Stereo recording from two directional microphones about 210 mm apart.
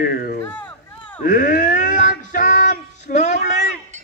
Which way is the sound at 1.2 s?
40° left (ahead or behind).